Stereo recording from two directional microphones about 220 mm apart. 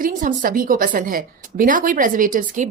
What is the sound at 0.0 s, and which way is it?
A woman's voice, 35° right (ahead or behind).